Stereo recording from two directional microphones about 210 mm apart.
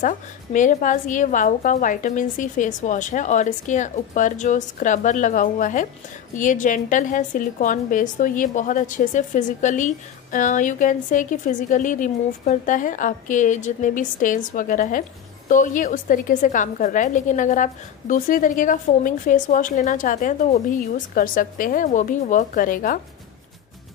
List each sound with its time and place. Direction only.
0.0 s a woman's voice: 40° left (ahead or behind)